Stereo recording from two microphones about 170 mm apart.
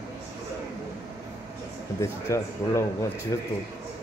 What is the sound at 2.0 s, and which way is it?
Speech, 15° left (ahead or behind).